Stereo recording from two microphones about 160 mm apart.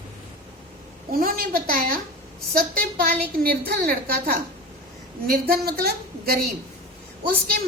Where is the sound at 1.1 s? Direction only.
60° right (ahead or behind).